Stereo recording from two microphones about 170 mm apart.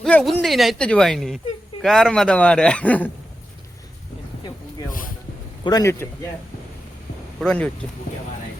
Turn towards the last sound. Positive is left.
turn(degrees=5)  # may be behind; listen again after turning